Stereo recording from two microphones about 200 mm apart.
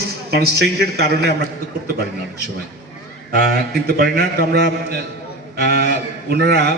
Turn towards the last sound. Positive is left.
turn(degrees=-55)  # may be behind; listen again after turning